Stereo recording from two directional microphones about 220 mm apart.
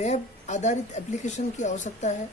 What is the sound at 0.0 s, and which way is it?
Speech, 30° left (ahead or behind).